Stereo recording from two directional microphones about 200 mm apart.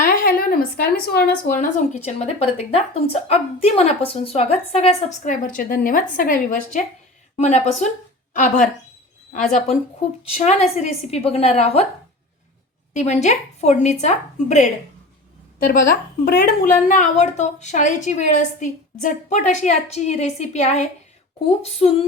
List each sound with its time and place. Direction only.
0.1 s speech: 50° left (ahead or behind)
7.3 s speech: 35° left (ahead or behind)
9.3 s speech: 35° left (ahead or behind)
12.9 s speech: 35° left (ahead or behind)
16.2 s speech: 55° left (ahead or behind)
16.9 s speech: 35° left (ahead or behind)
21.6 s a sound: 30° left (ahead or behind)